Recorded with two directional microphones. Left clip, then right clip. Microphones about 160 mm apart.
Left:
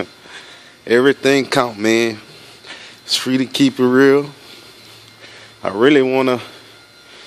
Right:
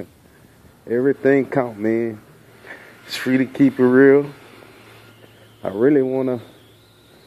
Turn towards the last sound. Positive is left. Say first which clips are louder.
# left 5 dB
turn(degrees=40)  # may be behind; listen again after turning